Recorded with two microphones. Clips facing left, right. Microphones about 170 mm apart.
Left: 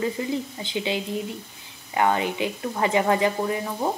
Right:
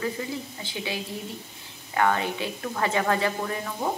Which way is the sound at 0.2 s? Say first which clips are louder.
Left 5 dB; 20° left (ahead or behind).